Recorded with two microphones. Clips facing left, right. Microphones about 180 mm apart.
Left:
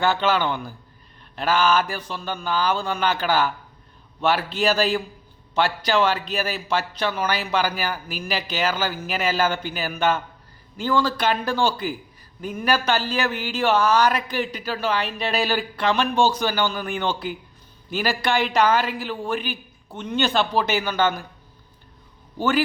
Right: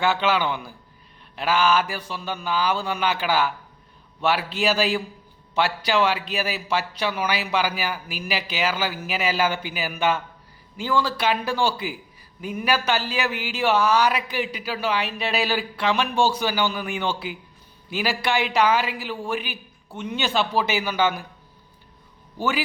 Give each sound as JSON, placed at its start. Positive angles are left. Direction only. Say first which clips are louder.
{"t": 0.0, "sound": "a man's voice", "louder": "left 1 dB", "side_deg": -5}
{"t": 22.4, "sound": "a man's voice", "louder": "left 4 dB", "side_deg": -5}